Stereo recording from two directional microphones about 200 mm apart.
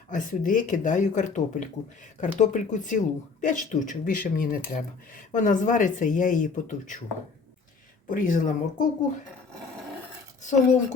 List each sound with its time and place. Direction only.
0.1 s speech: 40° left (ahead or behind)
8.1 s speech: 40° left (ahead or behind)
10.4 s speech: 35° left (ahead or behind)